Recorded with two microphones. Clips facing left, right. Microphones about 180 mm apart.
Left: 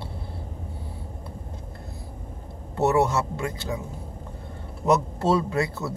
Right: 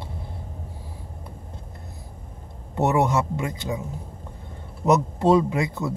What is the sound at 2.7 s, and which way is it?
Speech, 15° right (ahead or behind).